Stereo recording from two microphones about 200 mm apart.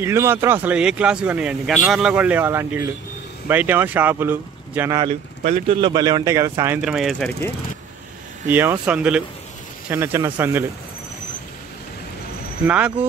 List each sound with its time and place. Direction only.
0.0 s speech: 10° right (ahead or behind)
5.4 s speech: 30° right (ahead or behind); by 7.3 s centre (ahead or behind)
8.5 s speech: 10° right (ahead or behind)
12.6 s speech: 5° right (ahead or behind)